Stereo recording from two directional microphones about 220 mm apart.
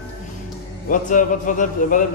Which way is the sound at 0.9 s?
35° left (ahead or behind).